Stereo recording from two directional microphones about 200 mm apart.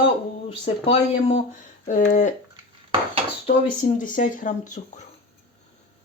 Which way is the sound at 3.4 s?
35° left (ahead or behind).